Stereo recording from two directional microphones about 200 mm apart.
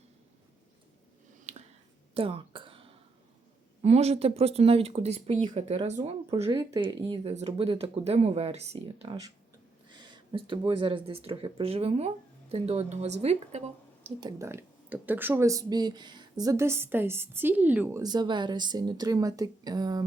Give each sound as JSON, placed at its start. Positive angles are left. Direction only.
{"t": 2.1, "sound": "a sound", "side_deg": -25}
{"t": 3.8, "sound": "speech", "side_deg": -30}
{"t": 14.2, "sound": "speech", "side_deg": -15}